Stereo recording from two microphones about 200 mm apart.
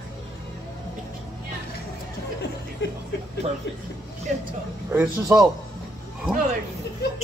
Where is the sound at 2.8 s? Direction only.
65° left (ahead or behind).